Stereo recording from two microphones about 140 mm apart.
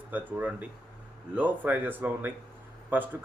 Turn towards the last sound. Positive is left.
turn(degrees=-10)  # may be behind; listen again after turning